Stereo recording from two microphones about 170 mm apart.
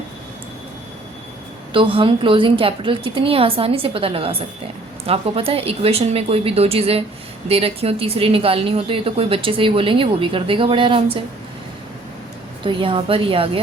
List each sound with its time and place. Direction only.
1.7 s speech: 30° right (ahead or behind)
12.6 s speech: 30° right (ahead or behind)